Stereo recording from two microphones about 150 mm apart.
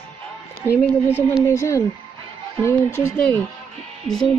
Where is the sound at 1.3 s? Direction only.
20° left (ahead or behind).